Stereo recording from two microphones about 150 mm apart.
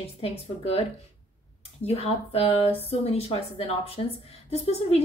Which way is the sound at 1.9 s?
40° left (ahead or behind).